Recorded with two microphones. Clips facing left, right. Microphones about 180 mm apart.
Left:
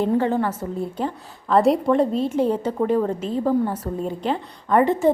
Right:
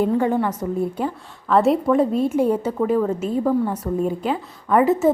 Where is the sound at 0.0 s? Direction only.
10° right (ahead or behind).